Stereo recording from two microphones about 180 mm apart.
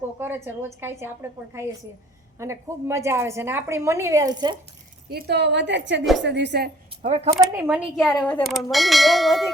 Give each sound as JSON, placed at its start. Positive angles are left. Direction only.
{"t": 0.2, "sound": "a woman's voice", "side_deg": -10}
{"t": 5.0, "sound": "a woman's voice", "side_deg": -60}
{"t": 7.0, "sound": "speech", "side_deg": -35}
{"t": 7.3, "sound": "a woman's voice", "side_deg": -15}
{"t": 7.9, "sound": "bell", "side_deg": 0}